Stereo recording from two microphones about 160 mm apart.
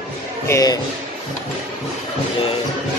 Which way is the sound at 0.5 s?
20° left (ahead or behind).